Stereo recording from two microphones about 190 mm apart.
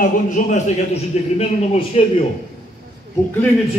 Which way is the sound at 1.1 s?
35° left (ahead or behind).